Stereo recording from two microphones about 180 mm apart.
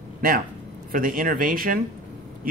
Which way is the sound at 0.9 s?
50° right (ahead or behind).